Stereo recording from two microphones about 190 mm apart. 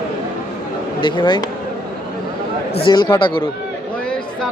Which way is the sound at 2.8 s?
25° left (ahead or behind).